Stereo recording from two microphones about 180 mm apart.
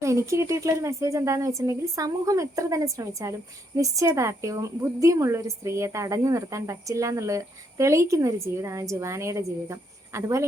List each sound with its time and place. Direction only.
0.0 s a woman's voice: 15° right (ahead or behind)